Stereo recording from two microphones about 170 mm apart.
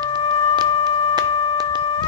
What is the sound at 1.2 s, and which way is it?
Music, 25° right (ahead or behind).